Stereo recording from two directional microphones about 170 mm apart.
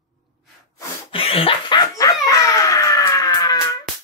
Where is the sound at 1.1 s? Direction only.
35° left (ahead or behind).